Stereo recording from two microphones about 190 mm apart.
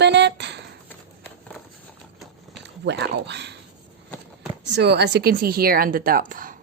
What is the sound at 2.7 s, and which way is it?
Speech, 65° right (ahead or behind).